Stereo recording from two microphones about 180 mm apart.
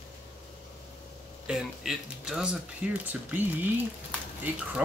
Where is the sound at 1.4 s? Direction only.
Centre (ahead or behind).